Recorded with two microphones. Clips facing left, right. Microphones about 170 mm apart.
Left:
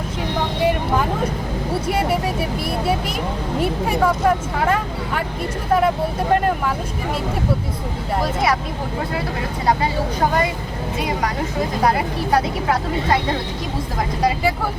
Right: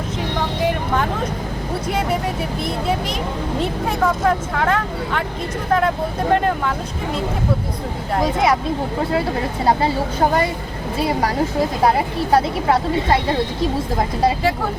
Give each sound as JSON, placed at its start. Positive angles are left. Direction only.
{"t": 0.6, "sound": "vehicle", "side_deg": 5}
{"t": 1.9, "sound": "speech", "side_deg": 5}
{"t": 6.3, "sound": "speech", "side_deg": 5}
{"t": 8.2, "sound": "speech", "side_deg": -20}
{"t": 12.3, "sound": "speech", "side_deg": -30}